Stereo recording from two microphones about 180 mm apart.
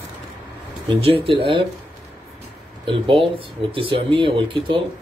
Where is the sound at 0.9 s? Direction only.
30° right (ahead or behind).